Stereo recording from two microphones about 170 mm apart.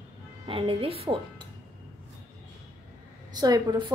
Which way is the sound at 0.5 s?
30° right (ahead or behind).